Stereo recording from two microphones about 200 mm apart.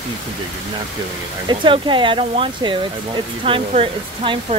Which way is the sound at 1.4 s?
25° right (ahead or behind).